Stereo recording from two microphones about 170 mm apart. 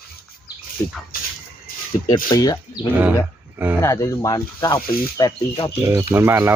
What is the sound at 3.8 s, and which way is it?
Speech, 20° left (ahead or behind).